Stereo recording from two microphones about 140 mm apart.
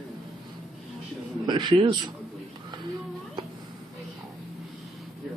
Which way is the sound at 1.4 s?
35° right (ahead or behind).